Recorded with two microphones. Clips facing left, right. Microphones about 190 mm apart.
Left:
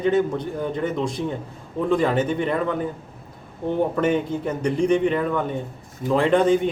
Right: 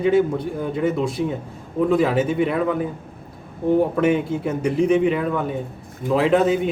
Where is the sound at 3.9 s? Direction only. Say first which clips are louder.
Right 2 dB; 5° right (ahead or behind).